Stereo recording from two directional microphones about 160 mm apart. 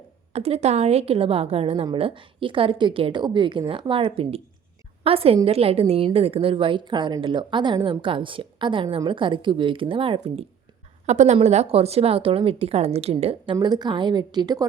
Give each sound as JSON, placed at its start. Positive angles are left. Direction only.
{"t": 0.3, "sound": "a woman's voice", "side_deg": -40}
{"t": 11.0, "sound": "a woman's voice", "side_deg": -45}